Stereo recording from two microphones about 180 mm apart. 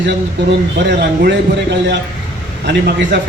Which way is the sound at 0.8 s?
75° right (ahead or behind).